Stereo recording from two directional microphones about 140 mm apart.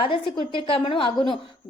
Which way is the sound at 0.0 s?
40° left (ahead or behind).